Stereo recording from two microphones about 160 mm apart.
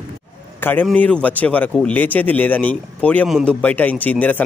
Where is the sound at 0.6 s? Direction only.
10° left (ahead or behind).